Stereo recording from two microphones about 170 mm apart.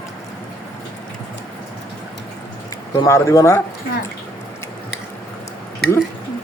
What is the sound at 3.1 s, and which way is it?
Speech, 15° left (ahead or behind).